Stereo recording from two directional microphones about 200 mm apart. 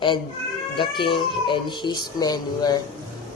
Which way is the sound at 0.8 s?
25° left (ahead or behind).